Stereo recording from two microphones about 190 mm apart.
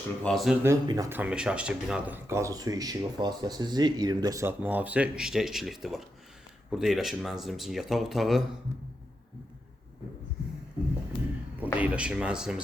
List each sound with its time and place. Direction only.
0.2 s speech: centre (ahead or behind)
0.6 s speech: 15° right (ahead or behind)
1.2 s speech: 5° right (ahead or behind)
11.6 s speech: 5° right (ahead or behind)